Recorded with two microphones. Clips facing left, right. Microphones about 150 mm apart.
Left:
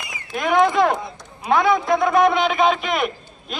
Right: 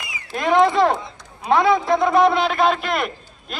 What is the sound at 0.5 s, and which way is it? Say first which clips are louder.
Speech: right 1 dB; 30° right (ahead or behind).